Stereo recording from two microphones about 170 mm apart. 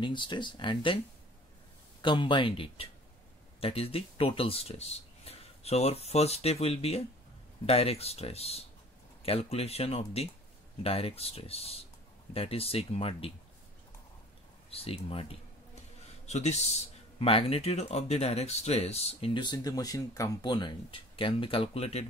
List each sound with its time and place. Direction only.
0.0 s speech: 30° left (ahead or behind)
2.0 s speech: 30° left (ahead or behind)
14.7 s speech: 35° left (ahead or behind)